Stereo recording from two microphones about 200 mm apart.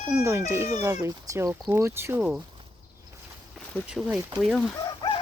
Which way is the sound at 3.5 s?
Centre (ahead or behind).